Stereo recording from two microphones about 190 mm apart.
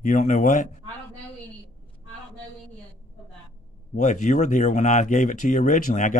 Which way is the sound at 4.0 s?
40° left (ahead or behind).